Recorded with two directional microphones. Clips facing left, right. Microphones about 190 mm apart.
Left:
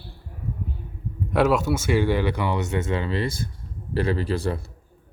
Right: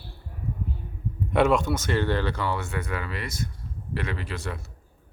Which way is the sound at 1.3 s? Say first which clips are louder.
Left 1 dB; 5° left (ahead or behind).